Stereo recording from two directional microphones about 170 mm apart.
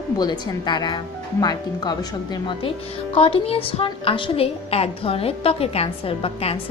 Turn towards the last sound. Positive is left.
turn(degrees=35)  # may be behind; listen again after turning